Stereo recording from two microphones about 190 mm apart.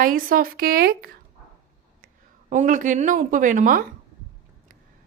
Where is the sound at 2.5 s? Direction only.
40° right (ahead or behind).